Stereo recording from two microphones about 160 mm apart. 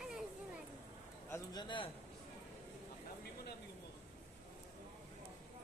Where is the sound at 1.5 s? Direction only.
30° left (ahead or behind).